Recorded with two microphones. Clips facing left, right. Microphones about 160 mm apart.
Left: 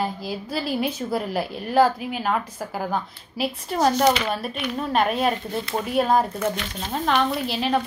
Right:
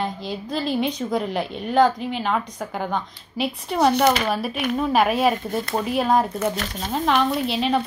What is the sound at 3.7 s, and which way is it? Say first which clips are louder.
Speech: right 2 dB; 65° right (ahead or behind).